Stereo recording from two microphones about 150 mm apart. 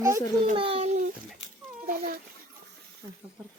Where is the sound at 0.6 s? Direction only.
40° right (ahead or behind).